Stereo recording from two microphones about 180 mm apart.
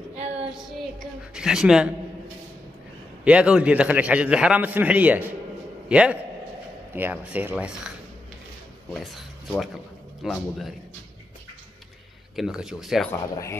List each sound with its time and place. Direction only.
0.1 s a sound: 35° right (ahead or behind)
1.3 s speech: 5° right (ahead or behind)
3.3 s a man's voice: 5° right (ahead or behind)
8.9 s speech: centre (ahead or behind)
12.4 s speech: 5° right (ahead or behind)
13.1 s speech: 15° left (ahead or behind)